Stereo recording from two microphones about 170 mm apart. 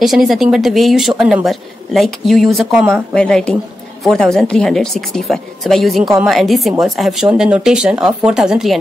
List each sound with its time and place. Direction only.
0.0 s speech: centre (ahead or behind)